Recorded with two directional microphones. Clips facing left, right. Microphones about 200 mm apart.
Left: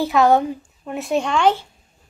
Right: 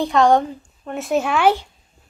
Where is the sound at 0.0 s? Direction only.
5° left (ahead or behind).